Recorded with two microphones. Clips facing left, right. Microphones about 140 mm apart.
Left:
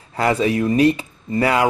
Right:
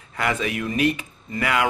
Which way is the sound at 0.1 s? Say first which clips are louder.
Left 7 dB; 35° left (ahead or behind).